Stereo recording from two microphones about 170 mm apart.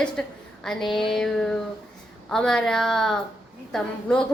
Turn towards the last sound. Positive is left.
turn(degrees=5)  # may be behind; listen again after turning